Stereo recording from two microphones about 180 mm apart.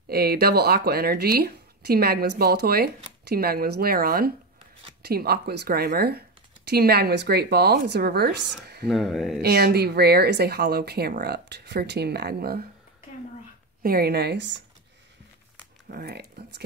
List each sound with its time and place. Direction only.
0.1 s speech: 60° right (ahead or behind)
8.8 s speech: centre (ahead or behind)
9.4 s speech: 60° right (ahead or behind)
13.8 s speech: 60° right (ahead or behind); by 14.6 s 80° right
15.9 s speech: 60° right (ahead or behind)